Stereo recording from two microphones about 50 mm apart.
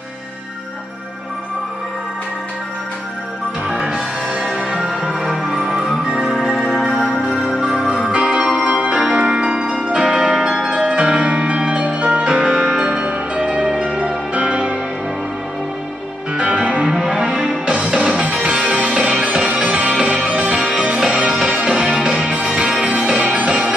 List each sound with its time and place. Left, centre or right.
3.6 s music: centre
4.6 s music: centre
8.4 s organ: centre
9.1 s music: centre
16.3 s music: centre